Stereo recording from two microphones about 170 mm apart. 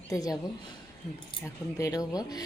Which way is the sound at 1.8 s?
20° left (ahead or behind).